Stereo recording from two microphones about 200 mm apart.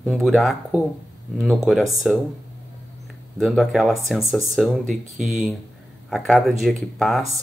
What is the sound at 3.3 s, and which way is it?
Speech, centre (ahead or behind).